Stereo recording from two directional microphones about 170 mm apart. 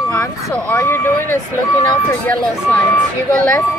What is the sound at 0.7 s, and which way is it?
A woman's voice, 15° left (ahead or behind).